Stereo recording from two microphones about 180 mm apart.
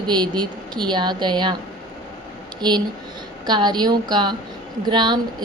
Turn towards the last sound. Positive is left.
turn(degrees=-25)  # may be behind; listen again after turning